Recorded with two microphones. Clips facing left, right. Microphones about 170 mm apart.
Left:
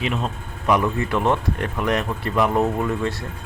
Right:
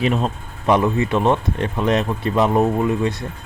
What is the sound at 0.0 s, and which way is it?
Speech, 40° right (ahead or behind).